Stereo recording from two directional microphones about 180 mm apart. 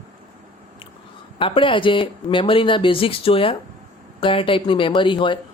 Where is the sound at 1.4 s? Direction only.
30° left (ahead or behind).